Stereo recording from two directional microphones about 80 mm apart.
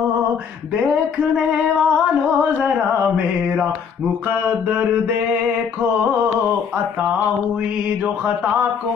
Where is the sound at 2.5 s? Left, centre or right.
Centre.